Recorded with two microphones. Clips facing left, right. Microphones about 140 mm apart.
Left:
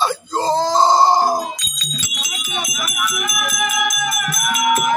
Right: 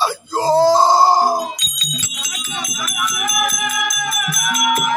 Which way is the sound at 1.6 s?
20° right (ahead or behind).